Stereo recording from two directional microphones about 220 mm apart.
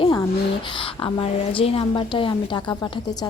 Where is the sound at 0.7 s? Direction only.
20° left (ahead or behind).